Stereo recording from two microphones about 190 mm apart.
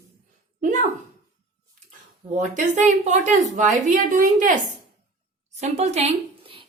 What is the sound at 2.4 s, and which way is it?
A woman's voice, 40° right (ahead or behind).